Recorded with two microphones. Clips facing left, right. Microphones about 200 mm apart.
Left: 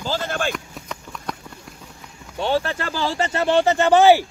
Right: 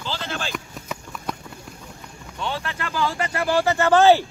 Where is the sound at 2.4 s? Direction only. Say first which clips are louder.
Left 7 dB; 30° left (ahead or behind); by 4.2 s 15° left (ahead or behind).